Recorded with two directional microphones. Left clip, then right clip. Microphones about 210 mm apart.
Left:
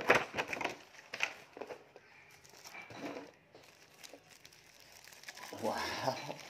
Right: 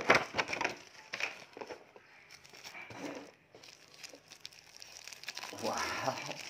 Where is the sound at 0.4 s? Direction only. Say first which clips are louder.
Right 3 dB; 15° right (ahead or behind).